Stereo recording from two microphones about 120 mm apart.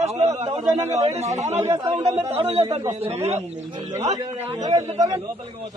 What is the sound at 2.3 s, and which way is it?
A man's voice, 55° right (ahead or behind).